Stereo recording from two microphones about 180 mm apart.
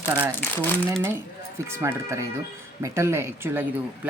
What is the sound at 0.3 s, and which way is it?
Speech, 10° left (ahead or behind).